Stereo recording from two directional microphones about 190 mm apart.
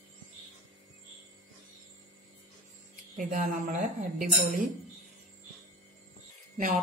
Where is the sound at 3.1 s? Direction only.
45° right (ahead or behind).